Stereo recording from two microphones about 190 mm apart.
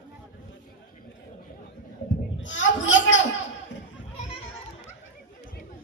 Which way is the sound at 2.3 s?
75° left (ahead or behind).